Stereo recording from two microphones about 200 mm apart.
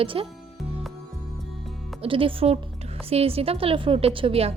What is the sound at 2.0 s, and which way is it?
A woman's voice, 25° right (ahead or behind).